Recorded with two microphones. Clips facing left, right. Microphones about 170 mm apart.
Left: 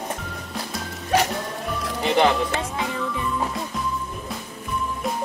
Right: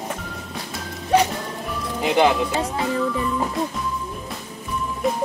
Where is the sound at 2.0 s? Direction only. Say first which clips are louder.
Right 1 dB; 10° right (ahead or behind).